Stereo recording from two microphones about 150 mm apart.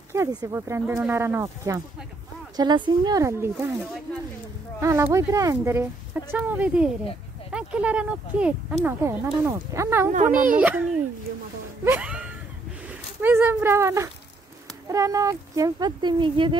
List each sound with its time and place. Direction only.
0.1 s speech: 20° right (ahead or behind)
2.5 s speech: 30° right (ahead or behind)
4.7 s speech: 20° right (ahead or behind)
10.1 s a child's voice: 60° right (ahead or behind)
10.6 s speech: 10° right (ahead or behind)
11.8 s a sound: 10° right (ahead or behind)
13.2 s speech: 15° right (ahead or behind); by 16.5 s 35° right (ahead or behind)